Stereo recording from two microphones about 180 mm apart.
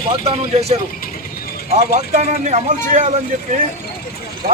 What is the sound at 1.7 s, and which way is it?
Speech, 40° right (ahead or behind).